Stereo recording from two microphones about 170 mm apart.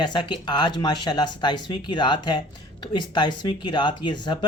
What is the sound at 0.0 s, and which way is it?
Speech, 25° left (ahead or behind).